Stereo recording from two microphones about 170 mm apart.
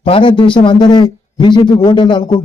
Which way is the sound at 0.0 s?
30° left (ahead or behind).